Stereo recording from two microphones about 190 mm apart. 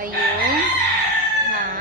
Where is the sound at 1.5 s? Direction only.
45° right (ahead or behind).